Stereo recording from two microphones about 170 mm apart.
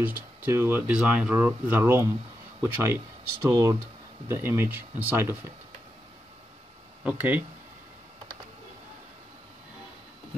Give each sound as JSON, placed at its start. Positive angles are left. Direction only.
{"t": 0.0, "sound": "speech", "side_deg": -10}
{"t": 7.0, "sound": "speech", "side_deg": -10}